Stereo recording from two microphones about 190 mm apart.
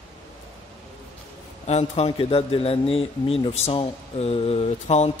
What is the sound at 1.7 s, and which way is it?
A man's voice, 35° left (ahead or behind).